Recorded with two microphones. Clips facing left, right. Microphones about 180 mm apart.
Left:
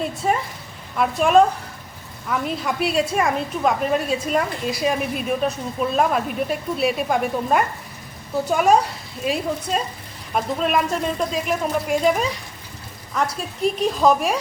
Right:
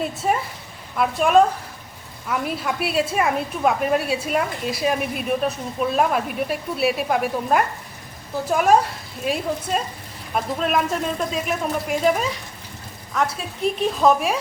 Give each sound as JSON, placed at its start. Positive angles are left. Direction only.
{"t": 0.2, "sound": "a woman's voice", "side_deg": -5}